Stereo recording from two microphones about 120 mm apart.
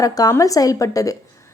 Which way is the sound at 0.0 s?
30° left (ahead or behind).